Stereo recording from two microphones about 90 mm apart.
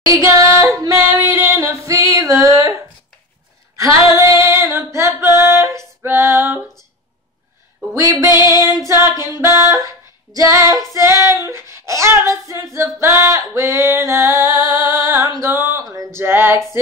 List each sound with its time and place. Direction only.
0.0 s singing: 35° right (ahead or behind)
1.2 s female singing: 35° right (ahead or behind)
3.7 s female singing: 35° right (ahead or behind)
8.4 s female singing: 45° left (ahead or behind)
8.7 s female singing: 35° right (ahead or behind)
9.4 s music: 35° right (ahead or behind)
10.3 s female singing: 40° right (ahead or behind)
11.4 s child singing: 30° right (ahead or behind)
12.7 s singing: 30° right (ahead or behind)
15.5 s music: 30° right (ahead or behind)